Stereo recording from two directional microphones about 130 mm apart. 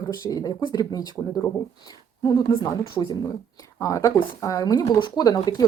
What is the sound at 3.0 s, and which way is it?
Speech, 10° left (ahead or behind).